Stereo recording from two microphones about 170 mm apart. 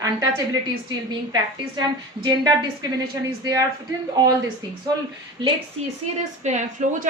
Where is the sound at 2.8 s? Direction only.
25° right (ahead or behind).